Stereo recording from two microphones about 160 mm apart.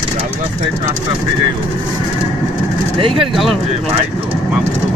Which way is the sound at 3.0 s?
35° right (ahead or behind).